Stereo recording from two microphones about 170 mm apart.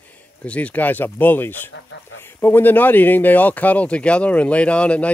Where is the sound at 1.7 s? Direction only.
90° left.